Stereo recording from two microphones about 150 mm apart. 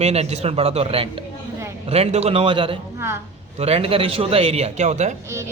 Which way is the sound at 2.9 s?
15° right (ahead or behind).